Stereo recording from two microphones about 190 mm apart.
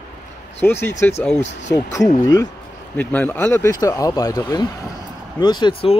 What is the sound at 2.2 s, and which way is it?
Speech, 20° left (ahead or behind).